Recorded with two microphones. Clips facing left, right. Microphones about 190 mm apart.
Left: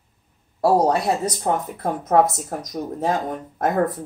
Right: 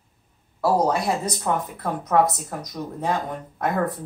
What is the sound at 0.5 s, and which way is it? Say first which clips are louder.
A woman's voice: left 3 dB; 40° left (ahead or behind).